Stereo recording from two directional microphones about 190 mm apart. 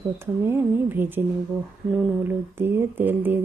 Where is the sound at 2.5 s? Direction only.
10° right (ahead or behind).